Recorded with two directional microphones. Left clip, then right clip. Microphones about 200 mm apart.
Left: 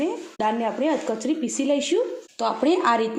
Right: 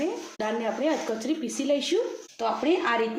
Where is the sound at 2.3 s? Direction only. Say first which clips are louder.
Left 4 dB; 45° left (ahead or behind).